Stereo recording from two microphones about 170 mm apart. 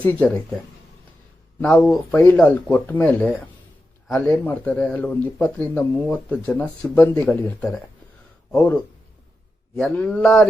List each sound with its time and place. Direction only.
0.0 s speech: 10° left (ahead or behind)
1.6 s speech: 5° left (ahead or behind)